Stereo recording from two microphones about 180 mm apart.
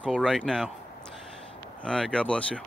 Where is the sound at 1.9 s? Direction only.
5° left (ahead or behind).